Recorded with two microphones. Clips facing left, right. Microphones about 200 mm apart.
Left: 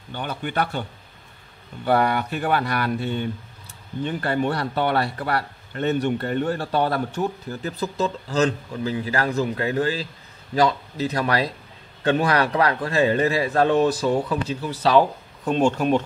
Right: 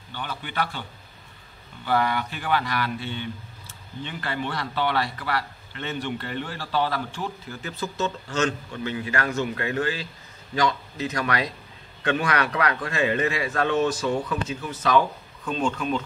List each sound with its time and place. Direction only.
0.1 s a man's voice: 50° left (ahead or behind)
1.9 s a man's voice: 55° left (ahead or behind)
7.4 s a man's voice: 35° left (ahead or behind)